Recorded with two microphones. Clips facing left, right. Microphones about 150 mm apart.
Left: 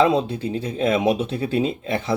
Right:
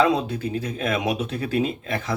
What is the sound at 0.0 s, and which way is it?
Speech, 30° left (ahead or behind).